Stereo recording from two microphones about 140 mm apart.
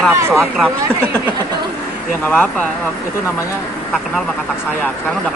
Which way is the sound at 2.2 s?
10° left (ahead or behind).